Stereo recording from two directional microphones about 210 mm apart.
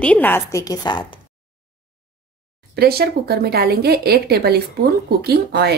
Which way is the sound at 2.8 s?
50° right (ahead or behind).